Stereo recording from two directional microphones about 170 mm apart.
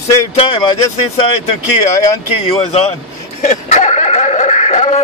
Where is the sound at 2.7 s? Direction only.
35° left (ahead or behind).